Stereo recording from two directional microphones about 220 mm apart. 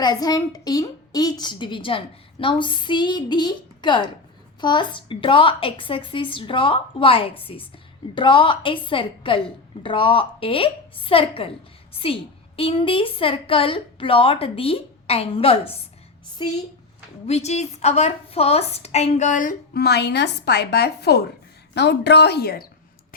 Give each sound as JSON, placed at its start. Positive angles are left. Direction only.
{"t": 0.0, "sound": "a woman's voice", "side_deg": 20}